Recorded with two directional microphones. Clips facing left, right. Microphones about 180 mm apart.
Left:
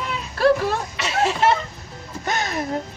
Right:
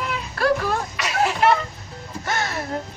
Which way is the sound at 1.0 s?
25° left (ahead or behind).